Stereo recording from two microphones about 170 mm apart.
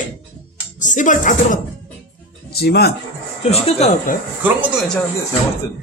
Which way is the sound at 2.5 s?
70° left (ahead or behind).